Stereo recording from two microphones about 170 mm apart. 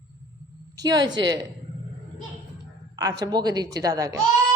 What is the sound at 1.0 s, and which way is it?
Speech, 90° right.